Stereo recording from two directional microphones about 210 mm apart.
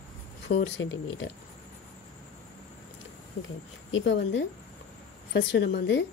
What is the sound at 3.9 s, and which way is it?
Speech, 60° left (ahead or behind).